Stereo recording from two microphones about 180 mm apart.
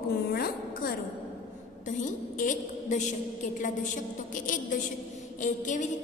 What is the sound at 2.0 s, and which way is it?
A woman's voice, 45° left (ahead or behind).